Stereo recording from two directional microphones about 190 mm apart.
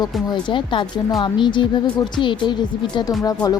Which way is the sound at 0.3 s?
25° left (ahead or behind).